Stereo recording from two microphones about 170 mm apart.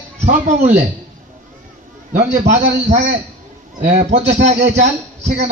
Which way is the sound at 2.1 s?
45° right (ahead or behind).